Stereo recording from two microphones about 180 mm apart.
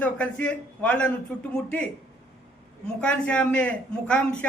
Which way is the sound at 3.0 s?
5° left (ahead or behind).